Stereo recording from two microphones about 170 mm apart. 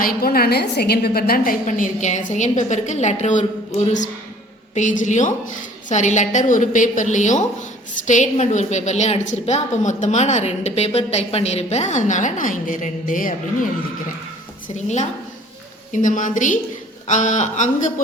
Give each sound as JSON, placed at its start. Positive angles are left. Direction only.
{"t": 0.0, "sound": "a woman's voice", "side_deg": 60}
{"t": 1.6, "sound": "a woman's voice", "side_deg": 45}
{"t": 15.9, "sound": "a woman's voice", "side_deg": 50}